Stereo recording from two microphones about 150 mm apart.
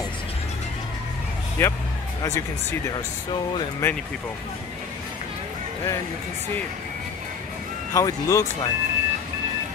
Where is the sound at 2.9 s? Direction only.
30° left (ahead or behind).